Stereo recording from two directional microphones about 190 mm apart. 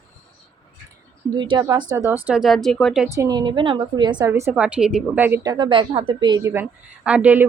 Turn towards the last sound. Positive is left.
turn(degrees=-10)  # may be behind; listen again after turning